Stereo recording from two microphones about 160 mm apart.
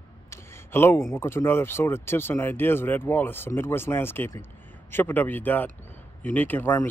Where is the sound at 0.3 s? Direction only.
15° left (ahead or behind).